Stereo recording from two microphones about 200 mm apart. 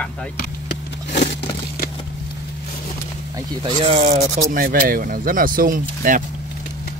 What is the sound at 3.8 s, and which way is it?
Speech, 35° right (ahead or behind).